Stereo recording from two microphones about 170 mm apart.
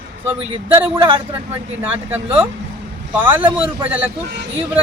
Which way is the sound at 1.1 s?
30° right (ahead or behind).